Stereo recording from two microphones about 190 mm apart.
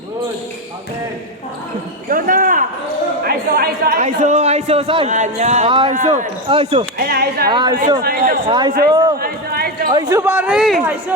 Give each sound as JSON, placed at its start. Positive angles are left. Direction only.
{"t": 2.0, "sound": "basketball bounce", "side_deg": -45}
{"t": 3.2, "sound": "a sound", "side_deg": -50}
{"t": 4.0, "sound": "a man's voice", "side_deg": -35}
{"t": 6.0, "sound": "a man's voice", "side_deg": -40}
{"t": 7.0, "sound": "speech", "side_deg": -55}
{"t": 7.5, "sound": "a woman's voice", "side_deg": -25}
{"t": 8.0, "sound": "speech", "side_deg": -50}
{"t": 8.4, "sound": "a woman's voice", "side_deg": -25}
{"t": 9.2, "sound": "a sound", "side_deg": -55}
{"t": 9.9, "sound": "a man's voice", "side_deg": -20}